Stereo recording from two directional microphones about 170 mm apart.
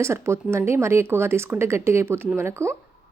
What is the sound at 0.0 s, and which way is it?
Speech, 15° right (ahead or behind).